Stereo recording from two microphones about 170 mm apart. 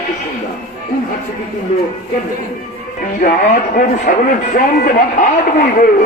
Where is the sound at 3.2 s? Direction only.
55° left (ahead or behind).